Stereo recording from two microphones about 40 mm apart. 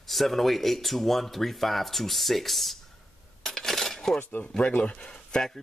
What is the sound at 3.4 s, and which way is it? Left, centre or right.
Coin, centre.